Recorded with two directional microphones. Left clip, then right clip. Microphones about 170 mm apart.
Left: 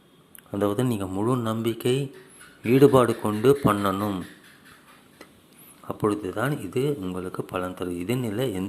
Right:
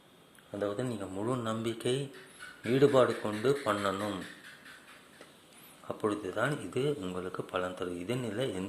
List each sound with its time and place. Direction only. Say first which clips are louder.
0.6 s speech: left 9 dB; 30° left (ahead or behind)
5.9 s speech: left 7 dB; 20° left (ahead or behind)